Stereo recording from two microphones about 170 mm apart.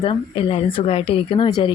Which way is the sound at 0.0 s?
30° left (ahead or behind).